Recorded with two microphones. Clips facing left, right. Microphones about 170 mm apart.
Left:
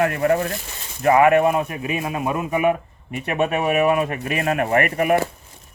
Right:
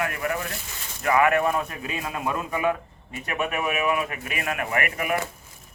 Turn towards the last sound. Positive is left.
turn(degrees=35)  # may be behind; listen again after turning